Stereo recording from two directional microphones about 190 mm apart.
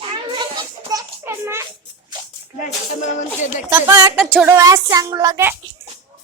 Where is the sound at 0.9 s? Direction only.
15° right (ahead or behind).